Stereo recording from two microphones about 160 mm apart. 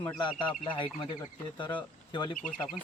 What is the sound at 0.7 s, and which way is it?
Speech, 30° left (ahead or behind).